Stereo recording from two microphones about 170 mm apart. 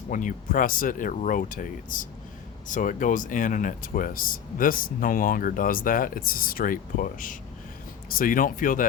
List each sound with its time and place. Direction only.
0.1 s speech: 50° left (ahead or behind)